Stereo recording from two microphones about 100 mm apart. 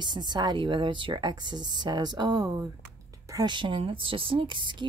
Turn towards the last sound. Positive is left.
turn(degrees=-55)  # may be behind; listen again after turning